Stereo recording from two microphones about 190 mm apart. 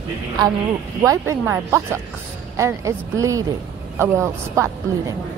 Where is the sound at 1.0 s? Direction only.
15° right (ahead or behind).